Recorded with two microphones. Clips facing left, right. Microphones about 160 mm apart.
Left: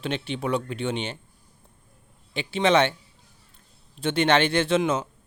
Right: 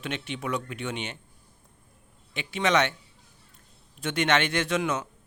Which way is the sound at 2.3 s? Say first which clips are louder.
Left 4 dB; 30° left (ahead or behind).